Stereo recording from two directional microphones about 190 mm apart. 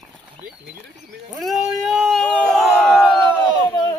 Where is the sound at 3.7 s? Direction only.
20° left (ahead or behind).